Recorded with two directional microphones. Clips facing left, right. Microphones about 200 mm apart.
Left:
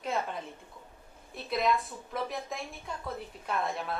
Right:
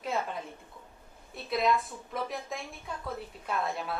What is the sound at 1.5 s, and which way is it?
Speech, centre (ahead or behind).